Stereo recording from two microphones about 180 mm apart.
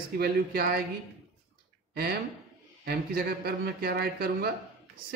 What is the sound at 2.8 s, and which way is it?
Speech, 60° right (ahead or behind).